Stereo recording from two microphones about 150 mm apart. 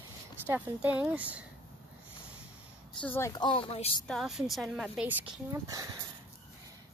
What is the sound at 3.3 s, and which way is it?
Speech, 30° left (ahead or behind).